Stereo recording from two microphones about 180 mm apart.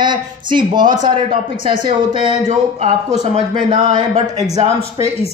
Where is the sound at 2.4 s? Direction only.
45° right (ahead or behind).